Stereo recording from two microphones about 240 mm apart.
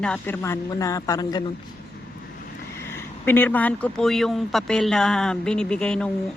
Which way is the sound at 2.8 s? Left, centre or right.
Centre.